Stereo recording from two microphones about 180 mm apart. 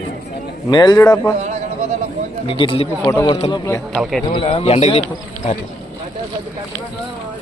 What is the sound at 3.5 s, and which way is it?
Speech, 15° left (ahead or behind).